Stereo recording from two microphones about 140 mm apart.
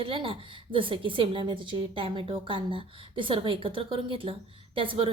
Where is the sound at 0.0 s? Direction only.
40° right (ahead or behind).